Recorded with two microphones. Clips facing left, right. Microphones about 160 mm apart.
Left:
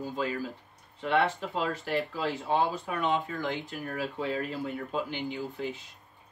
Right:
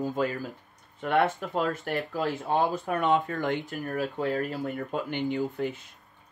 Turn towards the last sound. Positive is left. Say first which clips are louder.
# right 5 dB
turn(degrees=-55)  # may be behind; listen again after turning